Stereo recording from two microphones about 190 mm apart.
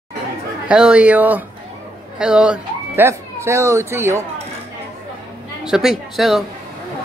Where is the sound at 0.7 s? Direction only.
5° right (ahead or behind).